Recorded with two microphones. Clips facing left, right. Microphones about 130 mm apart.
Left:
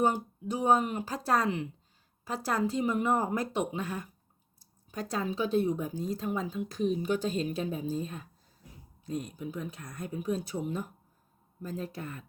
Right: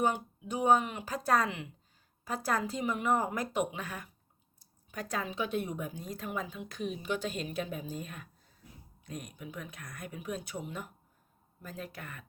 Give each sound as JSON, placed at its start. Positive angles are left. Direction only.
{"t": 0.0, "sound": "a woman's voice", "side_deg": 35}